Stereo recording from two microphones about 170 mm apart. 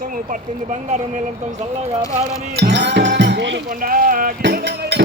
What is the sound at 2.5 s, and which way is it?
Speech, 75° right (ahead or behind).